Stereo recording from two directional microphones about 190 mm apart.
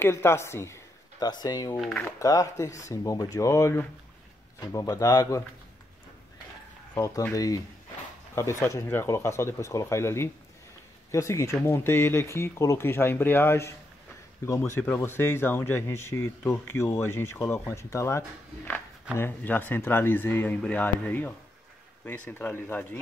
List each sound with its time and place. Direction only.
0.0 s speech: 10° left (ahead or behind)
1.8 s speech: centre (ahead or behind)
2.0 s speech: 15° left (ahead or behind)
7.0 s speech: 20° left (ahead or behind)